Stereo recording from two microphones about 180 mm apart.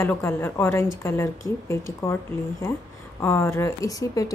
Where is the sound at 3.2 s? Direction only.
15° left (ahead or behind).